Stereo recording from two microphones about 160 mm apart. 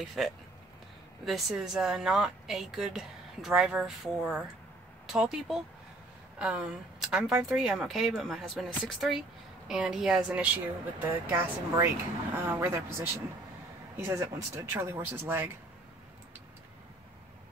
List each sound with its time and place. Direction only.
0.2 s speech: 5° right (ahead or behind)